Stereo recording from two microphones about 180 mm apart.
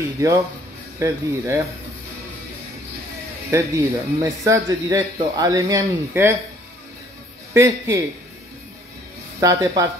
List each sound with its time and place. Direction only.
0.9 s speech: 15° right (ahead or behind)
3.4 s speech: 15° right (ahead or behind)
7.5 s speech: 15° right (ahead or behind)
9.4 s speech: 20° right (ahead or behind)